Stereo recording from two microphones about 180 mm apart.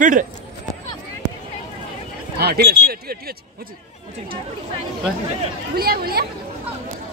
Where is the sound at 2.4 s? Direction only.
60° right (ahead or behind).